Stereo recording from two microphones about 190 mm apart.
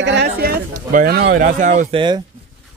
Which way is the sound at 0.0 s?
65° right (ahead or behind).